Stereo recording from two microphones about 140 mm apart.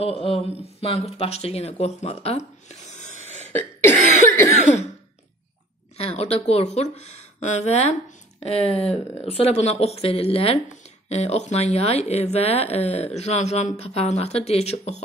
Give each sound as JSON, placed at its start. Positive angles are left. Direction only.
{"t": 0.0, "sound": "speech", "side_deg": 45}
{"t": 3.2, "sound": "throat clearing", "side_deg": -55}
{"t": 3.5, "sound": "cough", "side_deg": 15}
{"t": 4.6, "sound": "cough", "side_deg": 55}
{"t": 5.9, "sound": "speech", "side_deg": 45}